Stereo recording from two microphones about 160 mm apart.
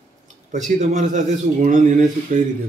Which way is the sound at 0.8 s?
50° right (ahead or behind).